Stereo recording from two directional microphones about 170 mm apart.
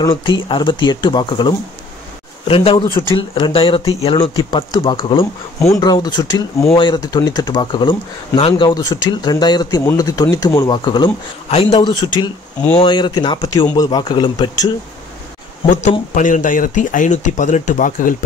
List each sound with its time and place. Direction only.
0.0 s speech: 25° left (ahead or behind)
5.6 s speech: 20° left (ahead or behind)
15.6 s speech: 45° left (ahead or behind)